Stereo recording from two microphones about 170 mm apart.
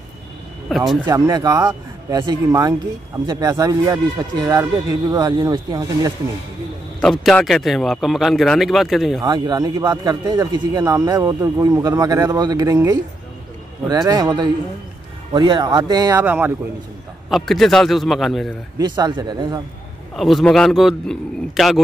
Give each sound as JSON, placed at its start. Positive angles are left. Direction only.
{"t": 0.7, "sound": "speech", "side_deg": 0}
{"t": 1.0, "sound": "speech", "side_deg": -20}
{"t": 7.0, "sound": "a man's voice", "side_deg": 5}
{"t": 9.2, "sound": "speech", "side_deg": -25}
{"t": 16.3, "sound": "speech", "side_deg": -10}
{"t": 17.3, "sound": "a man's voice", "side_deg": 0}
{"t": 18.8, "sound": "speech", "side_deg": -25}
{"t": 20.2, "sound": "a man's voice", "side_deg": 0}